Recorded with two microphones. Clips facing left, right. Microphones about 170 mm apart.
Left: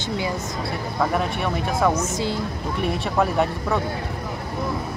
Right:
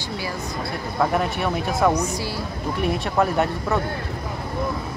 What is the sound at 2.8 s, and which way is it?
Speech, centre (ahead or behind).